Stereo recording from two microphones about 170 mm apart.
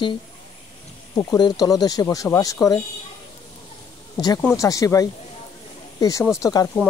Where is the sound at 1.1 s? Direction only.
25° left (ahead or behind).